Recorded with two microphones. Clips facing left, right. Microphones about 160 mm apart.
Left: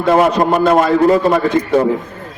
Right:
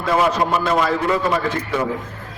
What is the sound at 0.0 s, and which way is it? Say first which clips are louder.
A man's voice: left 6 dB; 50° left (ahead or behind).